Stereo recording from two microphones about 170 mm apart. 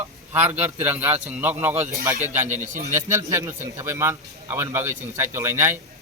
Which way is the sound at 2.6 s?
45° right (ahead or behind).